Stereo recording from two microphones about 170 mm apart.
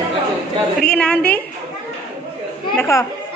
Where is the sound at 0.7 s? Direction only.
5° left (ahead or behind).